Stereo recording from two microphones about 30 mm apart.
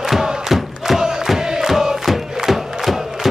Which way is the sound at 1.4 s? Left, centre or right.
Right.